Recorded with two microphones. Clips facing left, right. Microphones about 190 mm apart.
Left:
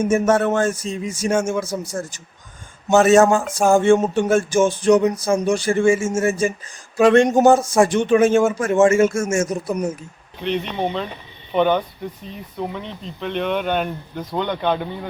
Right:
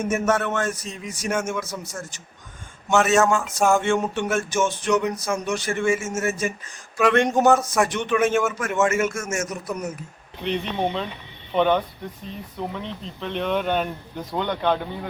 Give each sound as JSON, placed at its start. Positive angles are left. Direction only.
{"t": 0.0, "sound": "a man's voice", "side_deg": 30}
{"t": 2.9, "sound": "a sound", "side_deg": 35}
{"t": 6.9, "sound": "a man's voice", "side_deg": 30}
{"t": 10.4, "sound": "speech", "side_deg": 0}